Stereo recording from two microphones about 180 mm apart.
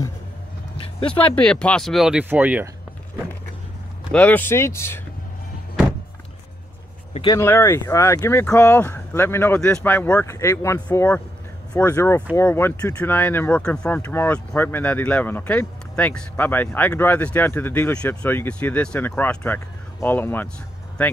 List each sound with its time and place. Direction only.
0.7 s a sound: 30° left (ahead or behind)
1.3 s speech: 5° left (ahead or behind)
4.1 s speech: 10° left (ahead or behind)
7.2 s speech: 20° left (ahead or behind)